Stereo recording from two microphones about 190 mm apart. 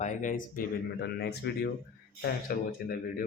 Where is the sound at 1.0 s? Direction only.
60° left (ahead or behind).